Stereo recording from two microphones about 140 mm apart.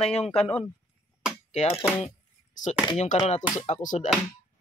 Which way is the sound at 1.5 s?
50° left (ahead or behind).